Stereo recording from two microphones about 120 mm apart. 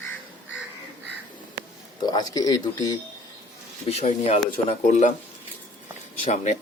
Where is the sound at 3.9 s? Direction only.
55° left (ahead or behind).